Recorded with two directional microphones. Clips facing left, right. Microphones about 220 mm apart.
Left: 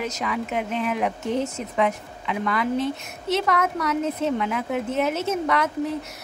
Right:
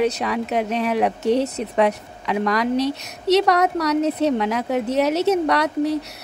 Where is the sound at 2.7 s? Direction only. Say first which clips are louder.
Right 4 dB; 80° right.